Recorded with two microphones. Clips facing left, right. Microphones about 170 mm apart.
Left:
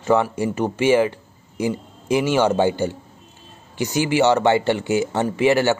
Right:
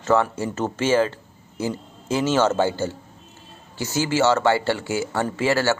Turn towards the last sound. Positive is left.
turn(degrees=20)  # may be behind; listen again after turning